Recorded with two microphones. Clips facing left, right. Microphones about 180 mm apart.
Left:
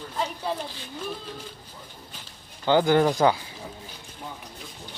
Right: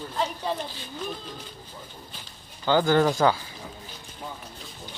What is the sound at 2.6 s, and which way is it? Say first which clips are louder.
Speech: left 1 dB; 20° left (ahead or behind).